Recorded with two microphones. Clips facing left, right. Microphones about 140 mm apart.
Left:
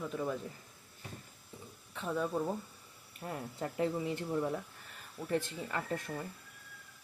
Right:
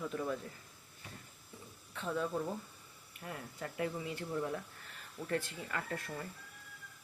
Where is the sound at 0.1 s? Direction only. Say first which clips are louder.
Left 1 dB; 10° left (ahead or behind).